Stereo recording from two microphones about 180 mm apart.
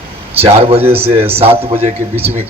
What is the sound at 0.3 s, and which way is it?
Speech, 35° right (ahead or behind).